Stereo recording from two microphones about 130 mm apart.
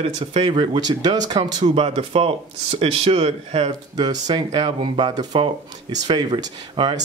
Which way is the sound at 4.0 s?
30° right (ahead or behind).